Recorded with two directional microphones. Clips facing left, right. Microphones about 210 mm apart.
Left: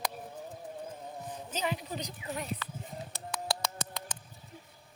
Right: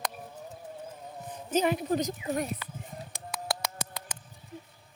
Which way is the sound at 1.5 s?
50° right (ahead or behind).